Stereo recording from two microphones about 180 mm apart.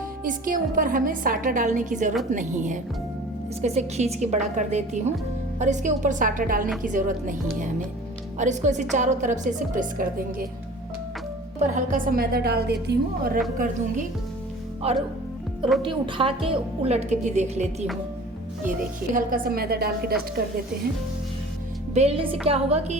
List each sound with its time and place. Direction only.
0.3 s a woman's voice: 50° right (ahead or behind)
11.7 s a woman's voice: 50° right (ahead or behind)
13.6 s a woman's voice: 45° right (ahead or behind)
14.8 s a woman's voice: 35° right (ahead or behind)
19.1 s a woman's voice: 55° right (ahead or behind)
21.9 s a woman's voice: 35° right (ahead or behind)